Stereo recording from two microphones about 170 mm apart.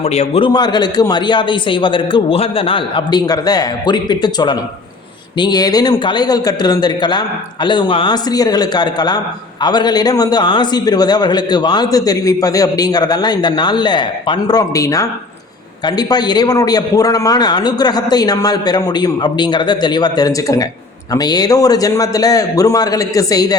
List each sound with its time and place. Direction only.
0.0 s a man's voice: 40° left (ahead or behind); by 23.6 s 20° left (ahead or behind)